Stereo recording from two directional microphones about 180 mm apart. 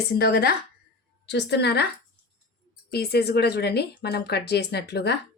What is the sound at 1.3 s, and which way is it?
Speech, 70° left (ahead or behind).